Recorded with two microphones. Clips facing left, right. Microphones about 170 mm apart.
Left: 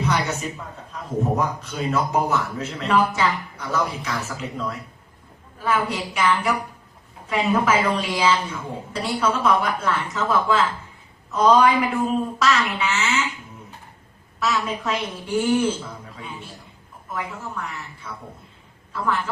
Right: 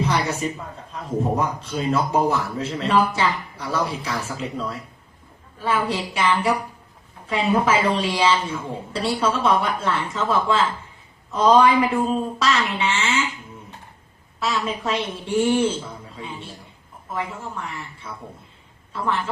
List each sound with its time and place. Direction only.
0.0 s a sound: 30° right (ahead or behind)
1.4 s a man's voice: 30° right (ahead or behind)
14.3 s a woman's voice: 30° right (ahead or behind)